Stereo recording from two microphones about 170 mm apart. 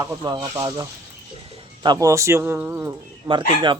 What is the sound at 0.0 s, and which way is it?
Speech, 25° right (ahead or behind).